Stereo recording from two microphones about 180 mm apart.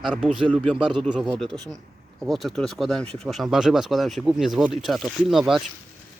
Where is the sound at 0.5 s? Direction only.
5° left (ahead or behind).